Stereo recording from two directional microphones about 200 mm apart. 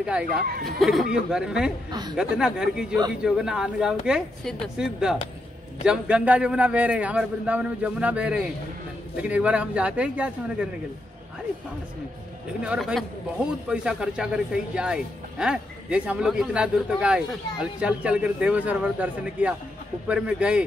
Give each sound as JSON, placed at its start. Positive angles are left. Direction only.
{"t": 0.3, "sound": "speech", "side_deg": -50}
{"t": 0.7, "sound": "speech", "side_deg": 0}
{"t": 1.9, "sound": "a woman's voice", "side_deg": -20}
{"t": 2.1, "sound": "a man's voice", "side_deg": -5}
{"t": 12.6, "sound": "speech", "side_deg": -5}